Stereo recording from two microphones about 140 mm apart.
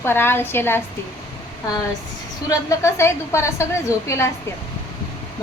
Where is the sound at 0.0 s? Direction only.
15° left (ahead or behind).